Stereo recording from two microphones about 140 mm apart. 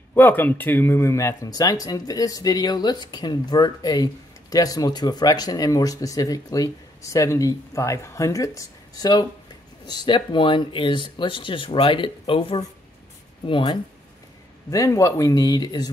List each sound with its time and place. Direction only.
0.1 s speech: 15° left (ahead or behind); by 13.7 s 35° left (ahead or behind)
14.7 s speech: 25° left (ahead or behind)